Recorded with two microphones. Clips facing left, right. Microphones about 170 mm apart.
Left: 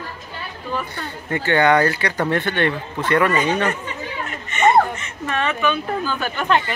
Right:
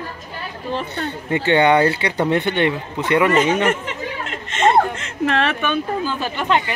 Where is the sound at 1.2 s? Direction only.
20° right (ahead or behind).